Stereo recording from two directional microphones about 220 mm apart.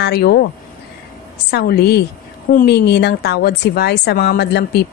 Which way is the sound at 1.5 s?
45° left (ahead or behind).